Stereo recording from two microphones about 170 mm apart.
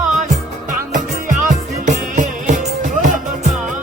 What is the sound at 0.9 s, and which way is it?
Music, 50° right (ahead or behind).